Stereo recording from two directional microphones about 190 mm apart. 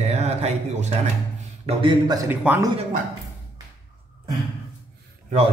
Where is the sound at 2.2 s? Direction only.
10° right (ahead or behind).